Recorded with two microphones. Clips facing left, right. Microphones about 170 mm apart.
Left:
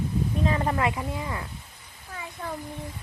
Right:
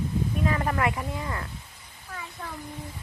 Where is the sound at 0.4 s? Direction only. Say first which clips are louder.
Left 1 dB; 20° left (ahead or behind).